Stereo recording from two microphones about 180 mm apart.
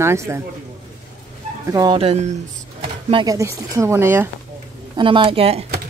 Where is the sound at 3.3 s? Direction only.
15° right (ahead or behind).